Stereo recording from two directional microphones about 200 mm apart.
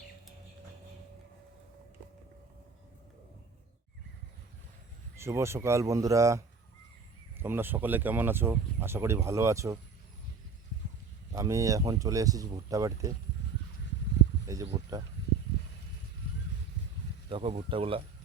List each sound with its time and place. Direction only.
5.1 s speech: 15° right (ahead or behind)
11.3 s speech: 15° right (ahead or behind)
14.4 s speech: 15° right (ahead or behind)
17.2 s speech: 25° right (ahead or behind)